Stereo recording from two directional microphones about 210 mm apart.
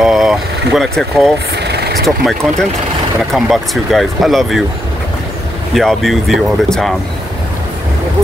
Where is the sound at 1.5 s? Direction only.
50° right (ahead or behind).